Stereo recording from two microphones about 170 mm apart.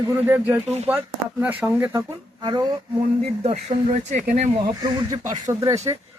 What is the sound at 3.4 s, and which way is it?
Speech, 40° right (ahead or behind).